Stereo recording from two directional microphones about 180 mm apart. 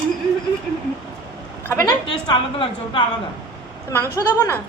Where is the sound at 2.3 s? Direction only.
25° left (ahead or behind).